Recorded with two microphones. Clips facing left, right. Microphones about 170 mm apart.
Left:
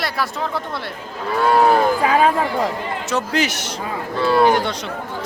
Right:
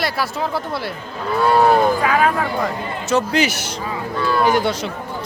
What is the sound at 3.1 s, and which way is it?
Speech, centre (ahead or behind).